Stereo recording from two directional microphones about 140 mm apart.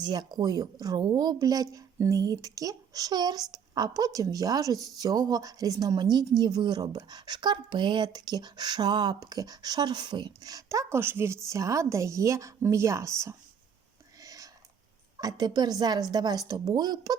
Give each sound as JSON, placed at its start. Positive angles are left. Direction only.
{"t": 0.0, "sound": "a woman's voice", "side_deg": -30}
{"t": 14.2, "sound": "a sound", "side_deg": -25}
{"t": 15.2, "sound": "a woman's voice", "side_deg": -30}